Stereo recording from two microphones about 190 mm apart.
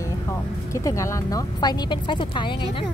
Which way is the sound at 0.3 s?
15° left (ahead or behind).